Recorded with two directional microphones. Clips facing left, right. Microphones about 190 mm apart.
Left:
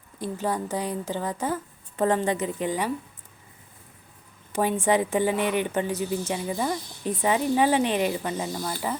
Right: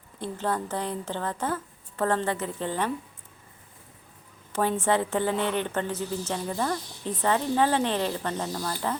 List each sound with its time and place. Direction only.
0.2 s a woman's voice: 10° left (ahead or behind)
4.5 s a woman's voice: 15° left (ahead or behind)